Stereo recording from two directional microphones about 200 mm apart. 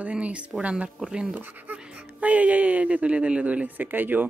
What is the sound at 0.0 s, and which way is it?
Speech, 5° right (ahead or behind).